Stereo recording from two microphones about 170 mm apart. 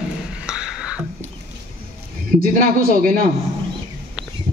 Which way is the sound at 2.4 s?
55° right (ahead or behind).